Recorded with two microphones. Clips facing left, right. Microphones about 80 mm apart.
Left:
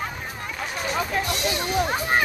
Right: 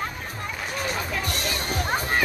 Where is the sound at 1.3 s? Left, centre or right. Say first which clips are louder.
Left 3 dB; right.